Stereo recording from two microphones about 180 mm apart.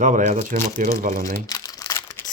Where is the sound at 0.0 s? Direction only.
45° right (ahead or behind).